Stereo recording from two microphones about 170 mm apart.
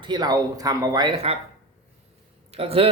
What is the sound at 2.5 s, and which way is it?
Speech, 35° right (ahead or behind).